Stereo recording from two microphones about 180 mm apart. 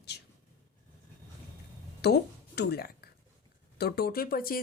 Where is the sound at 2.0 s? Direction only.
65° left (ahead or behind).